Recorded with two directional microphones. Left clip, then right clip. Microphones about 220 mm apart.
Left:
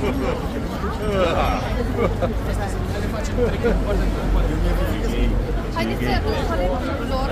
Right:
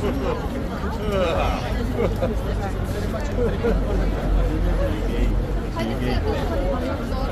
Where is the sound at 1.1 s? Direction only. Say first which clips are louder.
Left 2 dB; centre (ahead or behind).